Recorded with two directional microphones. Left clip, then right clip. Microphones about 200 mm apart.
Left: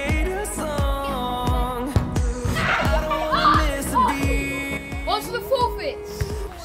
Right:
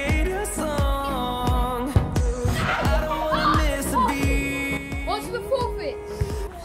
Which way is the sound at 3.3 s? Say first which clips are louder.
Left 4 dB; 50° right (ahead or behind).